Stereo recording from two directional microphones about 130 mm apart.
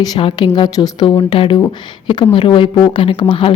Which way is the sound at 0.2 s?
40° left (ahead or behind).